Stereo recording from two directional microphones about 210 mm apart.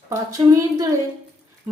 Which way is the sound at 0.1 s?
15° right (ahead or behind).